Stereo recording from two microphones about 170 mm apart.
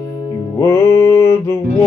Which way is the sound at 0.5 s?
15° left (ahead or behind).